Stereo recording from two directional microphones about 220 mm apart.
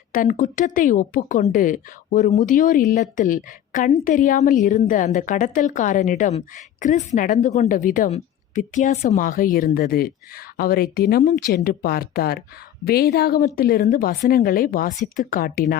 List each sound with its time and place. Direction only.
0.1 s a woman's voice: 35° left (ahead or behind)